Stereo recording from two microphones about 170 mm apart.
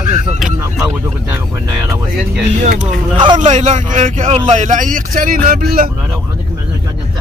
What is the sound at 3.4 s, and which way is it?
A man's voice, 45° right (ahead or behind).